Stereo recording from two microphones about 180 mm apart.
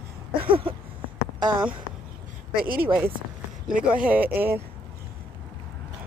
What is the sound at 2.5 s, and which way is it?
Speech, 55° right (ahead or behind).